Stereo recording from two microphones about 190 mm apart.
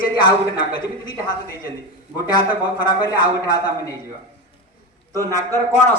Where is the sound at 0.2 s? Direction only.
20° left (ahead or behind).